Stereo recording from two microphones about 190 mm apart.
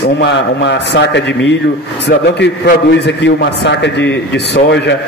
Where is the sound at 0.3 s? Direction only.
65° left (ahead or behind).